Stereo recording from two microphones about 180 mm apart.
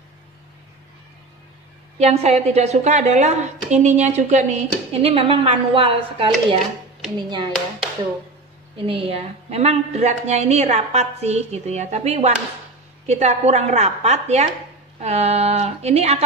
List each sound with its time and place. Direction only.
2.0 s a woman's voice: 35° right (ahead or behind)
8.7 s a woman's voice: 30° right (ahead or behind)